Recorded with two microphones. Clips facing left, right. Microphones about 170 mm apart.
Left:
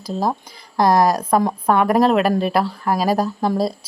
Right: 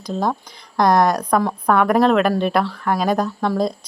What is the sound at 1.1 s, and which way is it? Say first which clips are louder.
Speech: left 1 dB; 25° left (ahead or behind).